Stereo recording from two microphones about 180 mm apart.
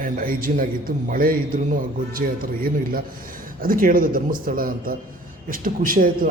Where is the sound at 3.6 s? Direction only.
50° right (ahead or behind).